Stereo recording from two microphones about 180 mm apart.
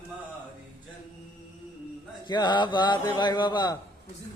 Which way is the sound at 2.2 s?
25° left (ahead or behind).